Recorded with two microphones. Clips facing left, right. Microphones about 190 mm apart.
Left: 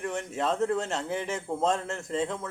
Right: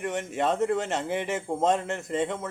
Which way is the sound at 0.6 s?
5° right (ahead or behind).